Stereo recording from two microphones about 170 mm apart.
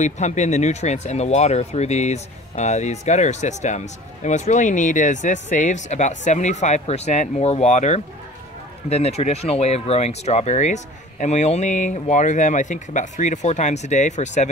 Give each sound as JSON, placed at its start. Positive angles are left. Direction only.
{"t": 0.0, "sound": "speech", "side_deg": 45}